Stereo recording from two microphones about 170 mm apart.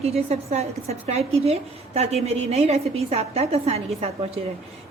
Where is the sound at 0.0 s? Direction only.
40° right (ahead or behind).